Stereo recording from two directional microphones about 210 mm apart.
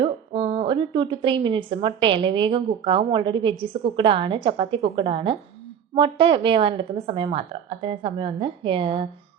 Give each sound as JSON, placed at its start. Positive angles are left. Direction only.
{"t": 0.0, "sound": "a woman's voice", "side_deg": -25}